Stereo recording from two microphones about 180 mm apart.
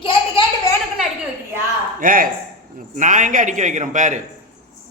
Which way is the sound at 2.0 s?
50° right (ahead or behind).